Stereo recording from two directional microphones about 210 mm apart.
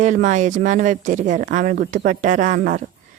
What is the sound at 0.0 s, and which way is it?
Speech, 35° right (ahead or behind).